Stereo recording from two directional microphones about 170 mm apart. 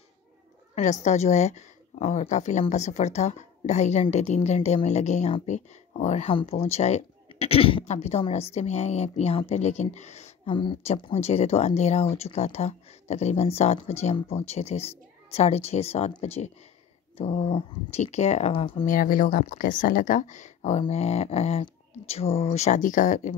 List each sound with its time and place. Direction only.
0.7 s speech: 45° left (ahead or behind)
18.9 s speech: 55° left (ahead or behind)